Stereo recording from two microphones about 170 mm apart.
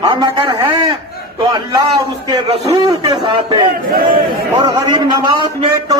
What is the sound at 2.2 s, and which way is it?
A man's voice, 25° right (ahead or behind).